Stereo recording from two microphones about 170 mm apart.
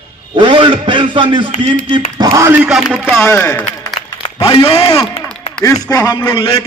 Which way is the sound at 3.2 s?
10° left (ahead or behind).